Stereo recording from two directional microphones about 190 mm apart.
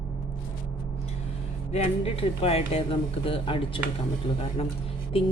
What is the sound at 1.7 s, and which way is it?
A woman's voice, 35° left (ahead or behind).